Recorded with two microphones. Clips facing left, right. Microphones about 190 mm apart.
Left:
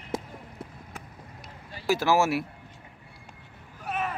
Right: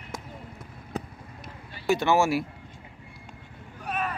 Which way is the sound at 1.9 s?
Centre (ahead or behind).